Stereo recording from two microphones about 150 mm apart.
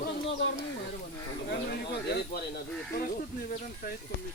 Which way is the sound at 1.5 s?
90° left.